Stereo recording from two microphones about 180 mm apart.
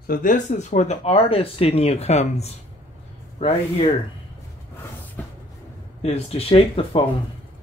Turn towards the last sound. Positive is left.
turn(degrees=30)  # may be behind; listen again after turning